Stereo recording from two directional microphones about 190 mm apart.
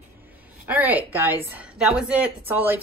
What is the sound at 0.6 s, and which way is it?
A woman's voice, 10° right (ahead or behind).